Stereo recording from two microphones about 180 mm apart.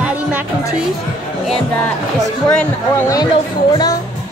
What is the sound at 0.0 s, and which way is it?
Music, 10° right (ahead or behind).